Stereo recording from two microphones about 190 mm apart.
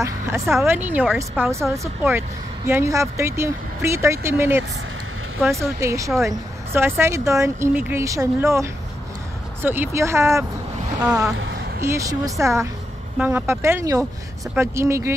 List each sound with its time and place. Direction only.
0.0 s a woman's voice: 15° right (ahead or behind)
11.8 s a woman's voice: 15° right (ahead or behind)